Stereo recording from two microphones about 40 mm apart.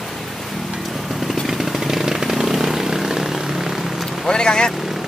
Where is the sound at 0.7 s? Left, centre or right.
Centre.